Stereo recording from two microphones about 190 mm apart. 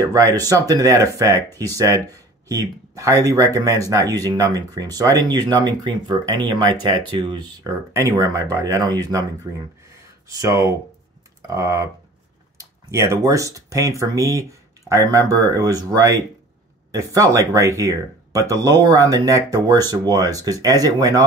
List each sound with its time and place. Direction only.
0.0 s speech: 15° right (ahead or behind)